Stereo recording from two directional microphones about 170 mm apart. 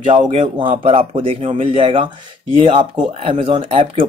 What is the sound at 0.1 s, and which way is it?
Speech, 40° right (ahead or behind).